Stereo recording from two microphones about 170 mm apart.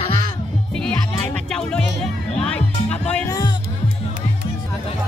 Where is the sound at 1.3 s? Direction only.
5° left (ahead or behind).